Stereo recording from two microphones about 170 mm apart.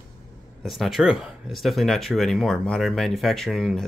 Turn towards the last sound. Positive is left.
turn(degrees=0)  # may be behind; listen again after turning